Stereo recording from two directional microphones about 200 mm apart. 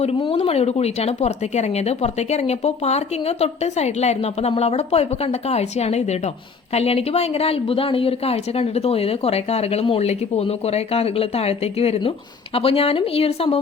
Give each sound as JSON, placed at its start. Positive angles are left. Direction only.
{"t": 0.0, "sound": "speech", "side_deg": 30}